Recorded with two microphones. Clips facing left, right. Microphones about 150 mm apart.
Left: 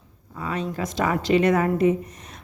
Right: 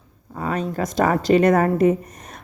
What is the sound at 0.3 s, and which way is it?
Speech, 45° right (ahead or behind).